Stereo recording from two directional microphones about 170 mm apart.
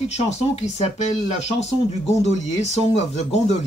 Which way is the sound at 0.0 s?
40° left (ahead or behind).